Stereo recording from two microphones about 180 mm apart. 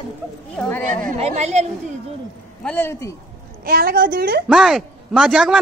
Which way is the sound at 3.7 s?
55° right (ahead or behind).